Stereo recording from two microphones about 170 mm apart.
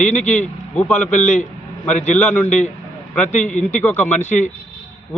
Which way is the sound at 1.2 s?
45° left (ahead or behind).